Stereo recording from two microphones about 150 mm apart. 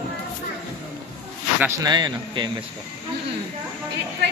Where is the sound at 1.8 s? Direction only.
30° right (ahead or behind).